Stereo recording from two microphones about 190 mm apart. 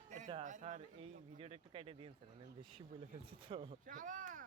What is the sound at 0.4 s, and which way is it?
Speech, 40° right (ahead or behind).